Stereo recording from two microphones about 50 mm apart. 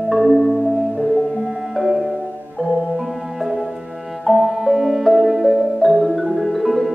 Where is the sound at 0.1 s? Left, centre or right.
Centre.